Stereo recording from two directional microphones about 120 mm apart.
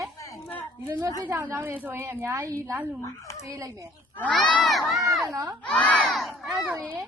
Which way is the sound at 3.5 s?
25° right (ahead or behind).